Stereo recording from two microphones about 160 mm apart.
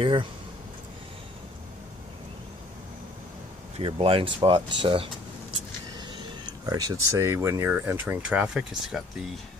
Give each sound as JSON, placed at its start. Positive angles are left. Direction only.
{"t": 0.0, "sound": "speech", "side_deg": -30}
{"t": 3.7, "sound": "speech", "side_deg": -35}
{"t": 6.6, "sound": "speech", "side_deg": -20}